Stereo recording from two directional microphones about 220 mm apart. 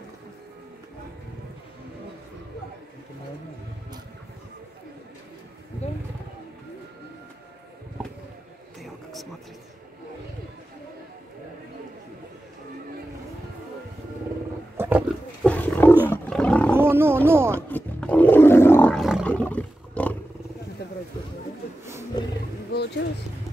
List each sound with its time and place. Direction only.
8.8 s a sound: centre (ahead or behind)
14.8 s roaring cats: 5° right (ahead or behind)
15.4 s roaring cats: 5° left (ahead or behind)
16.7 s speech: 10° right (ahead or behind)
17.6 s roar: 10° left (ahead or behind)
22.1 s roaring cats: 20° left (ahead or behind)